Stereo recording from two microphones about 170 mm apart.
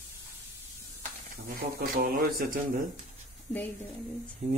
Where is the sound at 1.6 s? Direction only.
60° right (ahead or behind).